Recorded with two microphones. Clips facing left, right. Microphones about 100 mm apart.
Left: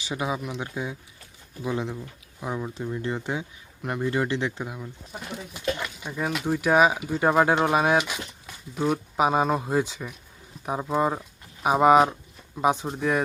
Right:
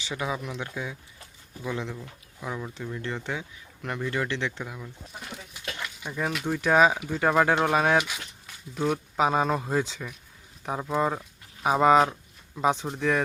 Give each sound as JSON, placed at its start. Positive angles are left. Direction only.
{"t": 0.1, "sound": "speech", "side_deg": 20}
{"t": 6.1, "sound": "speech", "side_deg": 10}